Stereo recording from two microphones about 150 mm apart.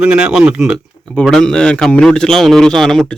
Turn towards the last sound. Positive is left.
turn(degrees=0)  # may be behind; listen again after turning